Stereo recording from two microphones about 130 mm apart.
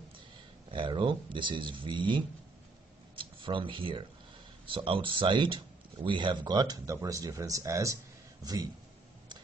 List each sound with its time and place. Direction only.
0.7 s speech: 40° right (ahead or behind); by 8.0 s 25° right (ahead or behind)